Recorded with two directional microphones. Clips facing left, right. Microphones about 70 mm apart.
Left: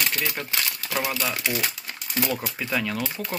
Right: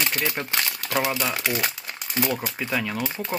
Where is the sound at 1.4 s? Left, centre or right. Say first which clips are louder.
Right 2 dB; right.